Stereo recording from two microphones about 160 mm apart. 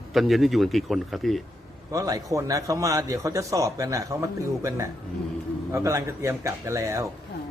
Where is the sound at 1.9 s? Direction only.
20° right (ahead or behind).